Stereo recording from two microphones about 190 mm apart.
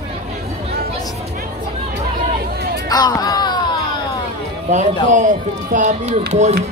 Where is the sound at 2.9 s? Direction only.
20° left (ahead or behind).